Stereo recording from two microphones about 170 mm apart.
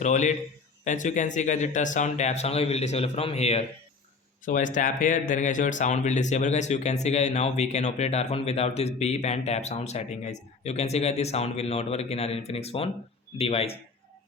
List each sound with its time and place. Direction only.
0.0 s speech: 45° left (ahead or behind)
4.4 s a man's voice: 50° left (ahead or behind)